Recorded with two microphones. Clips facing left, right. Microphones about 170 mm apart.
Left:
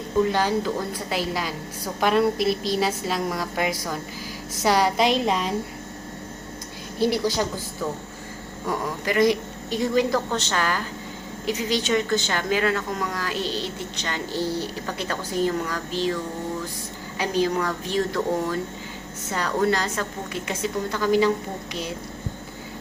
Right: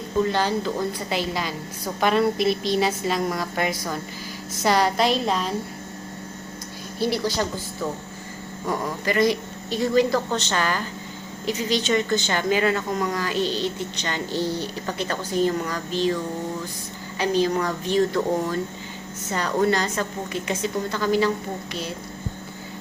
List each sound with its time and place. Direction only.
0.2 s a woman's voice: 10° left (ahead or behind)
7.0 s a woman's voice: 15° left (ahead or behind)
8.8 s a woman's voice: 10° left (ahead or behind)
10.5 s speech: 5° left (ahead or behind)
17.2 s a woman's voice: 10° left (ahead or behind)
19.3 s a woman's voice: centre (ahead or behind)